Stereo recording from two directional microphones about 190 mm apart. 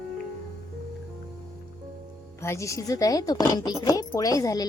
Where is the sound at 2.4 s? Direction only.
15° left (ahead or behind).